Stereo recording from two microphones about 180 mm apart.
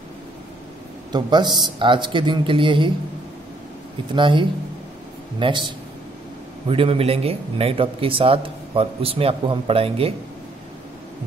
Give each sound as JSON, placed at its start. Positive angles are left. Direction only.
{"t": 1.1, "sound": "a man's voice", "side_deg": -25}
{"t": 4.1, "sound": "a man's voice", "side_deg": -25}
{"t": 6.7, "sound": "speech", "side_deg": -30}